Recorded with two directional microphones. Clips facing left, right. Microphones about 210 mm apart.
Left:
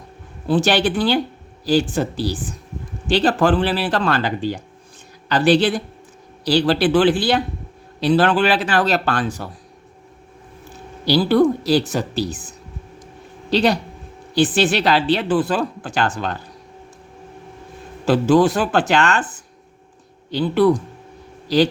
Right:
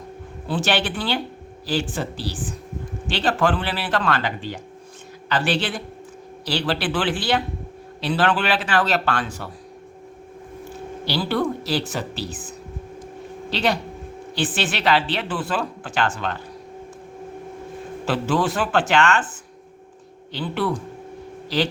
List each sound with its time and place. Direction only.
0.5 s speech: 40° left (ahead or behind)
11.0 s speech: 40° left (ahead or behind)
18.0 s speech: 40° left (ahead or behind)